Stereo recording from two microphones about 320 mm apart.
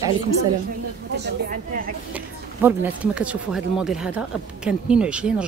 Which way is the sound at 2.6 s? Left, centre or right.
Centre.